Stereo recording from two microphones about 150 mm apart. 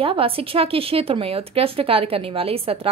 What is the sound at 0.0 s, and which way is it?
A woman's voice, 35° right (ahead or behind).